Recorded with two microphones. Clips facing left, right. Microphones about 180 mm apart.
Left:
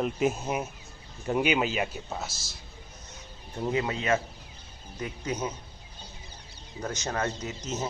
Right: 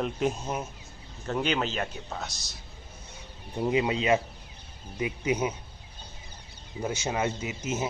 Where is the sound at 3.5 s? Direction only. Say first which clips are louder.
Right 3 dB; 15° right (ahead or behind).